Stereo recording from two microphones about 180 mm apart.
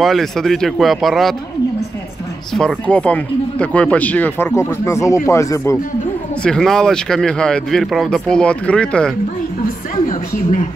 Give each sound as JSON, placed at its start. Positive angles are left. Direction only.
{"t": 0.0, "sound": "speech", "side_deg": 0}
{"t": 2.5, "sound": "speech", "side_deg": 5}
{"t": 6.4, "sound": "speech", "side_deg": 5}
{"t": 10.0, "sound": "a sound", "side_deg": 45}